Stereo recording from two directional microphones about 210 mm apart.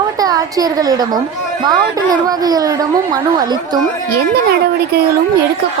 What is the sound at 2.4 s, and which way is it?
A woman's voice, 20° right (ahead or behind).